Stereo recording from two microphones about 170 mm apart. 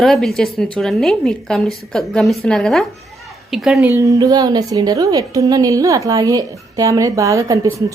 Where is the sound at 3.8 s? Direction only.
15° right (ahead or behind).